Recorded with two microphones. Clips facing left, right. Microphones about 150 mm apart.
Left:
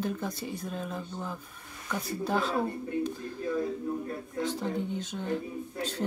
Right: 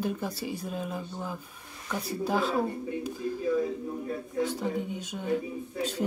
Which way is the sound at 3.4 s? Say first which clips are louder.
Right 1 dB; 50° left (ahead or behind).